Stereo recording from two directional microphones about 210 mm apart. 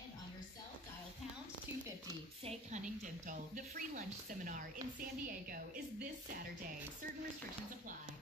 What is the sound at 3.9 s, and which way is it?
A woman's voice, 40° right (ahead or behind).